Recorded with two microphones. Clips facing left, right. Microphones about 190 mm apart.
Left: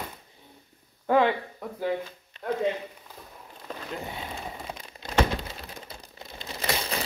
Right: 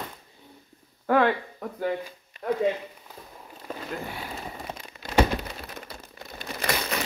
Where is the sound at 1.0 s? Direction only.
15° left (ahead or behind).